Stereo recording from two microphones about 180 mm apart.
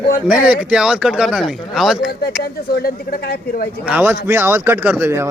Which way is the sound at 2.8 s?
60° left (ahead or behind).